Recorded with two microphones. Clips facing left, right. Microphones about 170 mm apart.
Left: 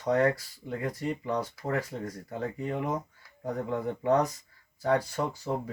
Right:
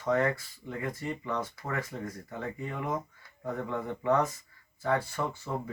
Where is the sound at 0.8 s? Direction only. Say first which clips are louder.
Left 2 dB; 35° left (ahead or behind).